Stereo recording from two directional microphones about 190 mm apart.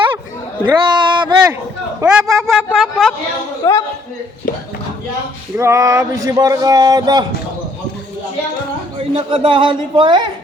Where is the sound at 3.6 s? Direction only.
20° left (ahead or behind).